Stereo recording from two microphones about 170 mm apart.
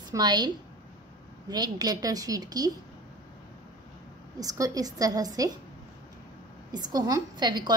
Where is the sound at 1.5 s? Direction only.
25° right (ahead or behind).